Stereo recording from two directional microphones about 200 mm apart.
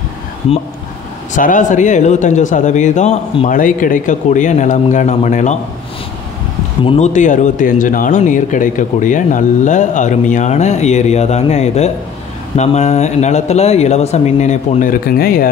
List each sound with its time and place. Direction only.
1.3 s speech: 40° left (ahead or behind)
6.8 s speech: 30° left (ahead or behind); by 15.5 s 45° left (ahead or behind)